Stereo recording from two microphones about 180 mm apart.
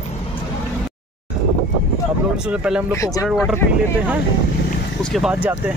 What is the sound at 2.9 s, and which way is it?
Speech, 20° left (ahead or behind).